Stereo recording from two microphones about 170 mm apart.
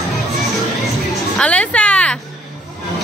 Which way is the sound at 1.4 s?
5° left (ahead or behind).